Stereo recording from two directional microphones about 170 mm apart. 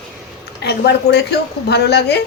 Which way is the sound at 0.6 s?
80° left.